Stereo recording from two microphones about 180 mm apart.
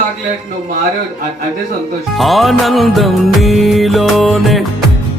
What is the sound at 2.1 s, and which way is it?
Music, centre (ahead or behind).